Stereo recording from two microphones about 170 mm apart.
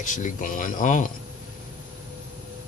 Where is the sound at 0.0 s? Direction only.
50° left (ahead or behind).